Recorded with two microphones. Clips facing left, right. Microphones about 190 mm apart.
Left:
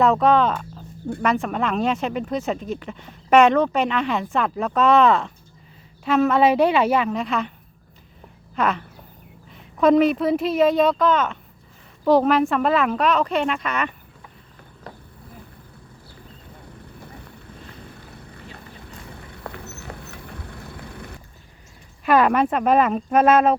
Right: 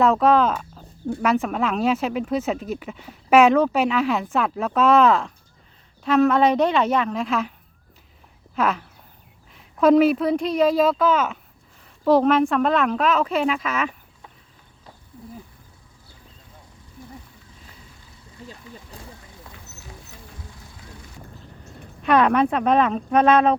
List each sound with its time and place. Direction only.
0.0 s speech: centre (ahead or behind)
8.5 s speech: centre (ahead or behind)
14.9 s a sound: 65° left (ahead or behind)
16.7 s boat: 65° left (ahead or behind)
22.0 s speech: 5° left (ahead or behind)